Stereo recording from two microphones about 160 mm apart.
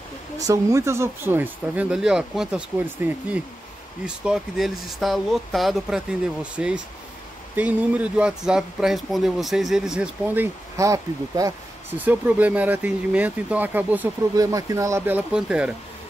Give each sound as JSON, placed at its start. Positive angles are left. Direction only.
{"t": 0.4, "sound": "speech", "side_deg": -20}
{"t": 14.3, "sound": "speech", "side_deg": -20}